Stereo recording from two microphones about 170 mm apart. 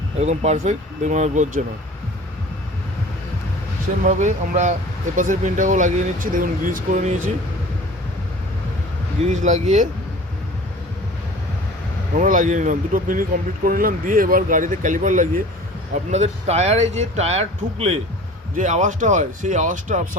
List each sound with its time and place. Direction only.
0.2 s speech: 40° right (ahead or behind)
4.0 s speech: 45° right (ahead or behind)
9.2 s speech: 45° right (ahead or behind)
12.1 s speech: 50° right (ahead or behind)